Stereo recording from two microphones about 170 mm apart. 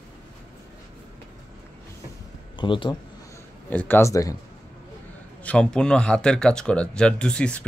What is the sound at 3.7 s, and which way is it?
Speech, 10° left (ahead or behind).